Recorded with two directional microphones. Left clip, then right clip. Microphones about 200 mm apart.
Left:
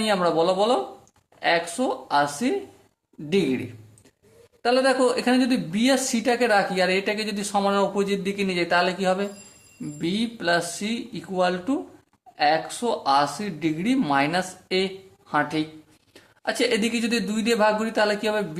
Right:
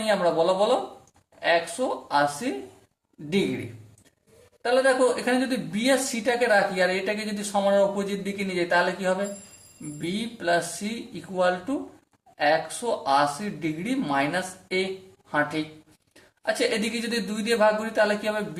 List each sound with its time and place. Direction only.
0.0 s speech: 40° left (ahead or behind)
4.6 s speech: 40° left (ahead or behind)